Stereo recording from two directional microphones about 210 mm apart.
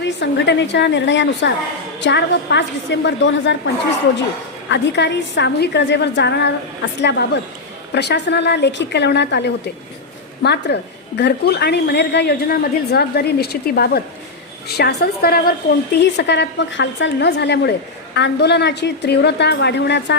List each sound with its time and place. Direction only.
0.0 s a woman's voice: 55° left (ahead or behind)
4.7 s a woman's voice: 55° left (ahead or behind)